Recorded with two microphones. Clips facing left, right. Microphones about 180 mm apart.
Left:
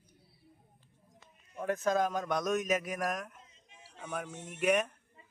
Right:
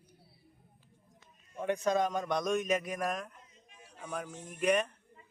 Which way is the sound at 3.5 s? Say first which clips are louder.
Right 1 dB; 25° left (ahead or behind).